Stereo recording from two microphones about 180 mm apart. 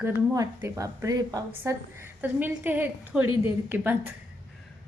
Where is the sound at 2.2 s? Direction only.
10° right (ahead or behind).